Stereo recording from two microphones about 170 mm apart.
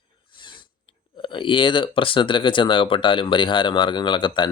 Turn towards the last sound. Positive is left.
turn(degrees=25)  # may be behind; listen again after turning